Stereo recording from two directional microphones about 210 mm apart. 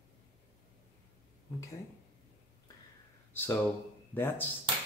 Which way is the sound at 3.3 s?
10° left (ahead or behind).